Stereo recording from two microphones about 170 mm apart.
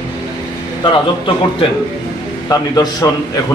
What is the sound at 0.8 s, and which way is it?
A man's voice, 30° left (ahead or behind).